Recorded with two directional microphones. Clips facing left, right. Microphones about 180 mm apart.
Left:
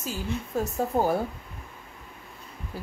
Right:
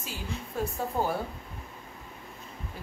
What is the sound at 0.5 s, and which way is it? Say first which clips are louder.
Speech: left 4 dB; 40° left (ahead or behind).